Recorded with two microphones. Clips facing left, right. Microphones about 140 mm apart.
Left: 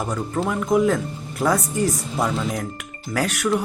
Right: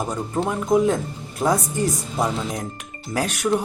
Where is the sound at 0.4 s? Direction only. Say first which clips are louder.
Even; 25° right (ahead or behind).